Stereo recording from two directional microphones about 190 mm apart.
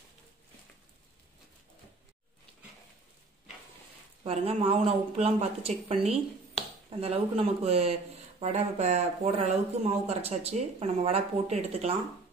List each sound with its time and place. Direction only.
4.2 s speech: 30° right (ahead or behind)